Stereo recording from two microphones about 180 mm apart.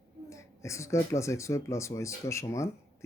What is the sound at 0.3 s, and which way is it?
Speech, 15° left (ahead or behind).